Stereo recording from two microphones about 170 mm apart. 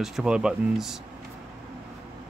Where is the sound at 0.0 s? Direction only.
5° right (ahead or behind).